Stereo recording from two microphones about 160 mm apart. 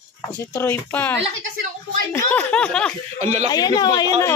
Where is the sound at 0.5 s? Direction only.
10° left (ahead or behind).